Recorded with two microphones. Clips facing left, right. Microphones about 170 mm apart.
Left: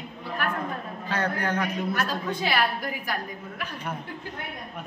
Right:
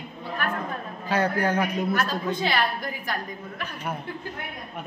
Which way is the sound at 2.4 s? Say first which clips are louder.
Left 2 dB; 10° left (ahead or behind).